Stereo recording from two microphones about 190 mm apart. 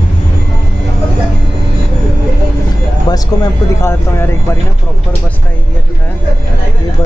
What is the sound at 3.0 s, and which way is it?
Speech, 20° left (ahead or behind).